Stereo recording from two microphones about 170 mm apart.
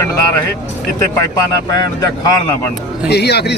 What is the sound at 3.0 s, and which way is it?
Speech, 75° left (ahead or behind).